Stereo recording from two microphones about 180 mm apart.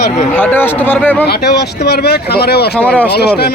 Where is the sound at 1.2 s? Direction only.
65° left (ahead or behind).